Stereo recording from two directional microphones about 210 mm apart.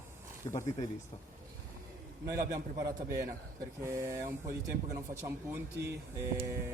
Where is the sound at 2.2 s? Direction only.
15° right (ahead or behind).